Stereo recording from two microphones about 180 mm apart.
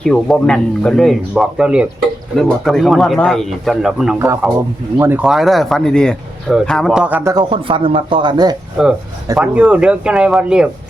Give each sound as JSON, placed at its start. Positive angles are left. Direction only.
{"t": 0.0, "sound": "speech", "side_deg": 5}
{"t": 4.9, "sound": "speech", "side_deg": -10}
{"t": 7.3, "sound": "speech", "side_deg": -25}
{"t": 8.8, "sound": "speech", "side_deg": -5}